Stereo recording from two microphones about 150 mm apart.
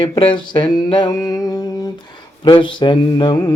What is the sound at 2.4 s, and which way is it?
Speech, 30° left (ahead or behind).